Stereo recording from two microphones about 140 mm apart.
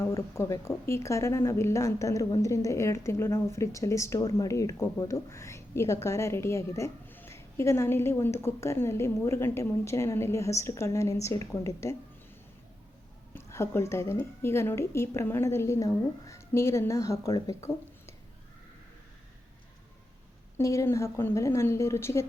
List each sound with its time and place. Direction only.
0.0 s a woman's voice: 20° left (ahead or behind)
13.3 s a woman's voice: 20° left (ahead or behind)
20.6 s a woman's voice: 20° left (ahead or behind)